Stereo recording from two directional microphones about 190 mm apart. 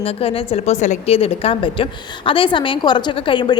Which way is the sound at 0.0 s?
30° left (ahead or behind).